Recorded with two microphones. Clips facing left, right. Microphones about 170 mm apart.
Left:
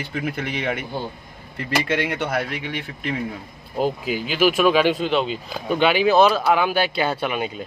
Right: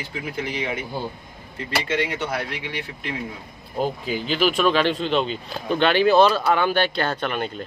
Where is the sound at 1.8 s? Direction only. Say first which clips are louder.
Left 1 dB; 60° left (ahead or behind).